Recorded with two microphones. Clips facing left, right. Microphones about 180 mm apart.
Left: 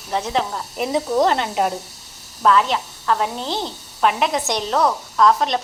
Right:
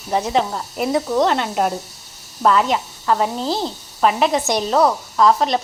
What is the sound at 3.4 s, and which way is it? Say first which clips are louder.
Speech: right 4 dB; 35° right (ahead or behind).